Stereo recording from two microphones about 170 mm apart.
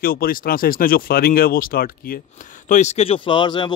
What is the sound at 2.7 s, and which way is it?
Speech, 40° left (ahead or behind).